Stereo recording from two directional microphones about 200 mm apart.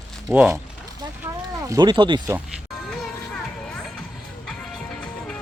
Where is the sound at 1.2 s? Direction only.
15° right (ahead or behind).